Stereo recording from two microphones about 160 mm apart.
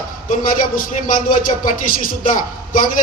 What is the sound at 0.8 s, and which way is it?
A man's voice, 60° left (ahead or behind).